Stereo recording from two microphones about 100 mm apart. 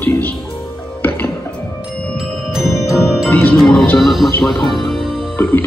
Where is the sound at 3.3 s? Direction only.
15° left (ahead or behind).